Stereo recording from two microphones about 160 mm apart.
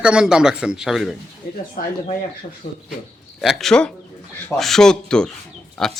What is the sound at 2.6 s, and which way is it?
Speech, 45° left (ahead or behind).